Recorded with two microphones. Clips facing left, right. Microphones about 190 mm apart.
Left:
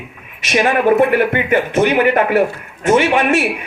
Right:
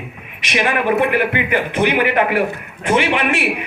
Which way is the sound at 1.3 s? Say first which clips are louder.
Left 4 dB; 45° left (ahead or behind).